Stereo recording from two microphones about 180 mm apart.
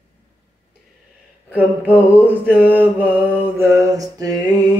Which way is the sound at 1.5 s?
10° right (ahead or behind).